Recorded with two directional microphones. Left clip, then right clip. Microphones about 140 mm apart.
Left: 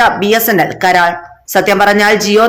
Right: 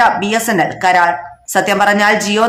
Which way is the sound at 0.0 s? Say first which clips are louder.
Left 2 dB; 20° left (ahead or behind).